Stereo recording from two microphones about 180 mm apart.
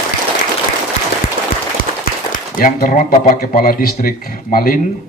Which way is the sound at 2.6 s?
50° left (ahead or behind).